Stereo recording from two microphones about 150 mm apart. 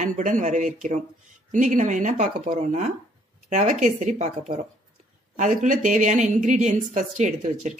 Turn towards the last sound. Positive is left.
turn(degrees=-55)  # may be behind; listen again after turning